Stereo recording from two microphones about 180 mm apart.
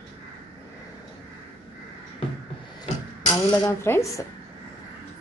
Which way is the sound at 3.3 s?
20° left (ahead or behind).